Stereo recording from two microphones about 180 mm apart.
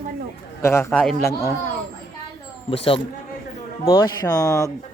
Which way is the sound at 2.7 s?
30° left (ahead or behind).